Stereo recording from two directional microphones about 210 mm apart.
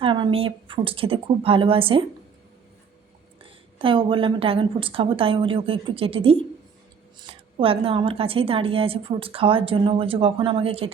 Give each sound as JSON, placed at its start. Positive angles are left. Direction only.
{"t": 0.0, "sound": "a woman's voice", "side_deg": -25}
{"t": 3.4, "sound": "a woman's voice", "side_deg": -25}